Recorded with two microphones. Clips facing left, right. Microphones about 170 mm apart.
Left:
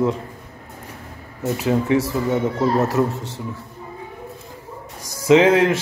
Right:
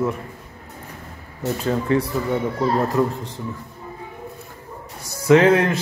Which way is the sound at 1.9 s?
90° left.